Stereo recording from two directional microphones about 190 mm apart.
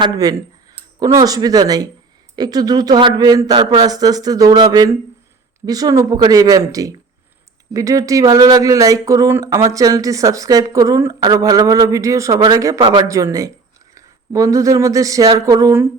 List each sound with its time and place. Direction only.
0.0 s a man's voice: 20° right (ahead or behind)